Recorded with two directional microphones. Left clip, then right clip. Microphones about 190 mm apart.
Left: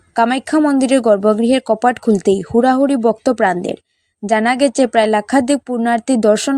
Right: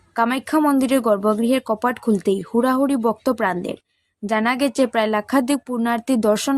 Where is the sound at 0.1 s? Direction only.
20° left (ahead or behind).